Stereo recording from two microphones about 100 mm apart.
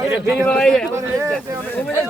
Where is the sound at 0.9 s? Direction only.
30° right (ahead or behind).